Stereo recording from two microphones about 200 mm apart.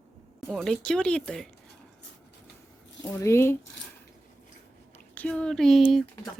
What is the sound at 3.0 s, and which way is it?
Speech, 15° left (ahead or behind).